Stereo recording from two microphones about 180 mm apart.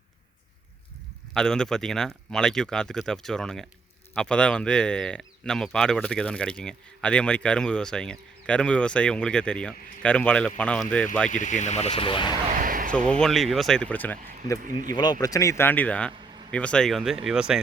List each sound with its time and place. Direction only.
1.3 s speech: 5° left (ahead or behind)
11.3 s speech: 45° left (ahead or behind); by 12.4 s 25° left (ahead or behind)
12.5 s a sound: 50° right (ahead or behind)
13.1 s speech: 5° left (ahead or behind)
14.6 s speech: 50° right (ahead or behind)
14.9 s speech: 20° left (ahead or behind); by 17.6 s 5° right (ahead or behind)